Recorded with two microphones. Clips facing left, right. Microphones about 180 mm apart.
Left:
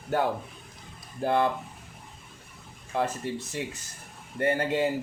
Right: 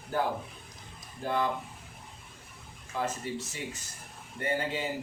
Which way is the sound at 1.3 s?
65° left (ahead or behind).